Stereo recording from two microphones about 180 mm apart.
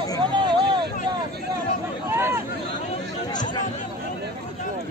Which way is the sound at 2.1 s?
15° right (ahead or behind).